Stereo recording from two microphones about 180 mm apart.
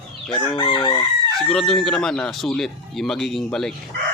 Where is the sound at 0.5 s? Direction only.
25° left (ahead or behind).